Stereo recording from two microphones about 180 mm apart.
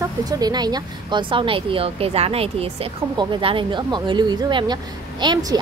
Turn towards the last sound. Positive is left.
turn(degrees=-25)  # may be behind; listen again after turning